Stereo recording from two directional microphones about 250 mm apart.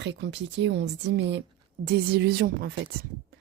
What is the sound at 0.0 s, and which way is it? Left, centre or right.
A woman's voice, right.